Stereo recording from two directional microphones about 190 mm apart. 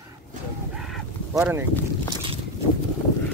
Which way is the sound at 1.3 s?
15° right (ahead or behind).